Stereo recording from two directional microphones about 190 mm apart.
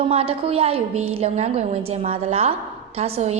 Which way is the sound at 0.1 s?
30° right (ahead or behind).